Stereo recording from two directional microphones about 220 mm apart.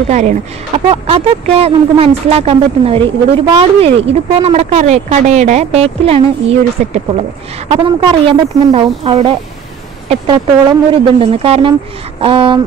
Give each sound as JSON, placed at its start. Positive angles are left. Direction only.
{"t": 0.1, "sound": "speech", "side_deg": -30}